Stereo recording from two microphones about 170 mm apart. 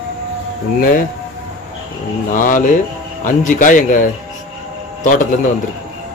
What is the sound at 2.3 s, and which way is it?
Speech, 50° left (ahead or behind).